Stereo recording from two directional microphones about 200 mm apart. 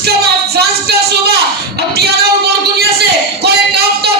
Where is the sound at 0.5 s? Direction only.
50° right (ahead or behind).